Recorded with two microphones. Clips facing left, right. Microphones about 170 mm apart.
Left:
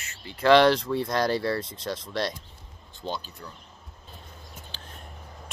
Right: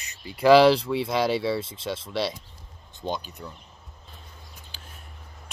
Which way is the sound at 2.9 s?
15° right (ahead or behind).